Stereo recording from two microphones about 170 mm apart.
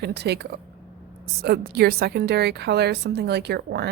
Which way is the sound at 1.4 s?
65° right (ahead or behind).